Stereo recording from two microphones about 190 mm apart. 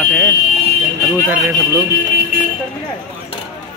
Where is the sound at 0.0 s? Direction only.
10° left (ahead or behind).